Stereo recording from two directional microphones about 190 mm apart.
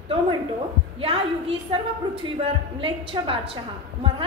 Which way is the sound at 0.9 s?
30° right (ahead or behind).